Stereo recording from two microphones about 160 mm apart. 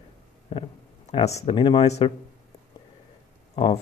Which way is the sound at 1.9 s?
40° left (ahead or behind).